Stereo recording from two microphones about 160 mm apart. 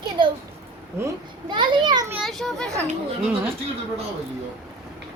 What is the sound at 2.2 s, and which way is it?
Children playing, centre (ahead or behind).